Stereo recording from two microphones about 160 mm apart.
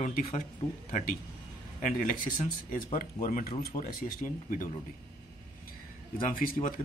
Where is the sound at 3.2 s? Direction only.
60° left (ahead or behind).